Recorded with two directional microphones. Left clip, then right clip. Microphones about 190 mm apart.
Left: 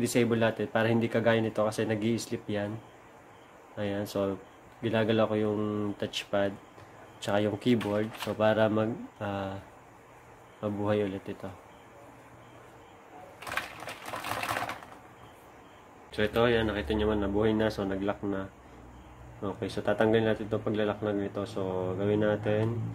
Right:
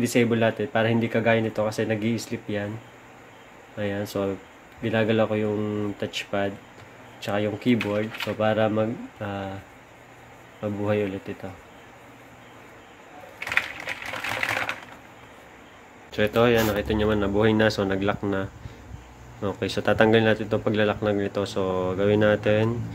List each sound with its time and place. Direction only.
0.0 s speech: 10° right (ahead or behind)
3.7 s speech: 5° right (ahead or behind)
10.6 s speech: centre (ahead or behind)
16.1 s speech: 15° right (ahead or behind)